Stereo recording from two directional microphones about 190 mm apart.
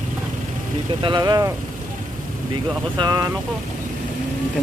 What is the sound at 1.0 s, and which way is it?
Speech, 20° right (ahead or behind).